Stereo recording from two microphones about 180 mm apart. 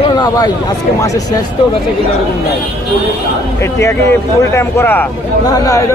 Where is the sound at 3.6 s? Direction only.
15° left (ahead or behind).